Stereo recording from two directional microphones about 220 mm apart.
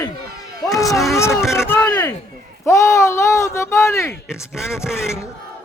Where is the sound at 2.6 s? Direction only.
15° left (ahead or behind).